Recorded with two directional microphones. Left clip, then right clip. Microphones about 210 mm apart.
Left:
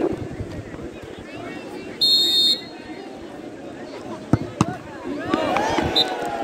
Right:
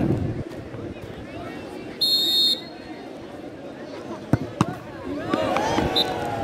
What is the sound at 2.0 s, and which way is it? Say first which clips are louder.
Buzzer: left 3 dB; centre (ahead or behind).